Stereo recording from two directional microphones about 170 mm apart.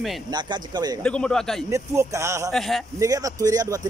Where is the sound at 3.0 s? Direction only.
20° right (ahead or behind).